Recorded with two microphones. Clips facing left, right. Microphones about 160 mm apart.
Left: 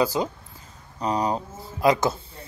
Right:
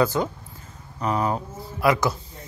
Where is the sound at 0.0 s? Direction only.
10° left (ahead or behind).